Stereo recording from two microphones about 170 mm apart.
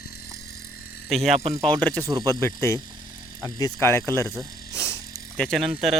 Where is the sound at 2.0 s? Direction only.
20° right (ahead or behind).